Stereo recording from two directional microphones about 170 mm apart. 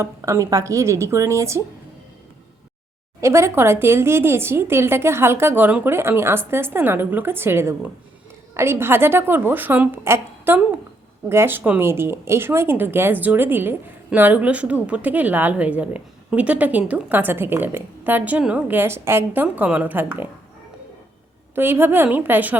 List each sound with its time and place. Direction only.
0.0 s speech: 20° right (ahead or behind)
3.2 s speech: 15° right (ahead or behind)
21.5 s speech: 10° right (ahead or behind)